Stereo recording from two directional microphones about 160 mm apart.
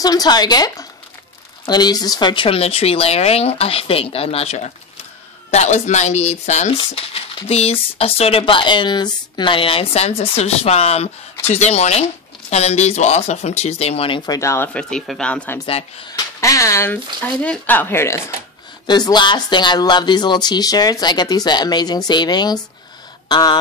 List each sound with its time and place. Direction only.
0.0 s speech: 25° left (ahead or behind)
14.7 s speech: 5° left (ahead or behind)
18.9 s speech: 25° left (ahead or behind)